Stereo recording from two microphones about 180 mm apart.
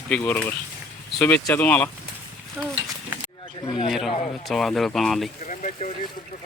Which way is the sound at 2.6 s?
10° right (ahead or behind).